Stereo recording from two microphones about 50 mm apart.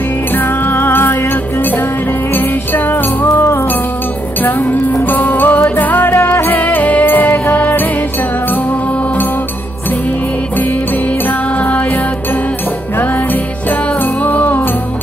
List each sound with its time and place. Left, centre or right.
0.3 s music: left
4.4 s music: left
11.5 s music: left
13.0 s music: left